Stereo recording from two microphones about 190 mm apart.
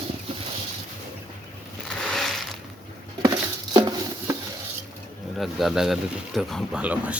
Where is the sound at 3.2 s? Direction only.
20° right (ahead or behind).